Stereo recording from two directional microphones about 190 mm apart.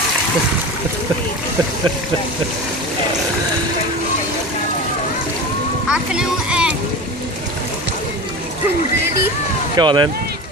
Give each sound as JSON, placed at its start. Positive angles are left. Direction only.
{"t": 5.9, "sound": "a child's voice", "side_deg": -5}
{"t": 9.8, "sound": "speech", "side_deg": -25}